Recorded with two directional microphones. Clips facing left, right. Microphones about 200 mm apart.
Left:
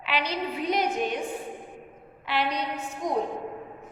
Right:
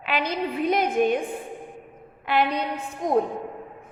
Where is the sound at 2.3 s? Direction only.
50° right (ahead or behind).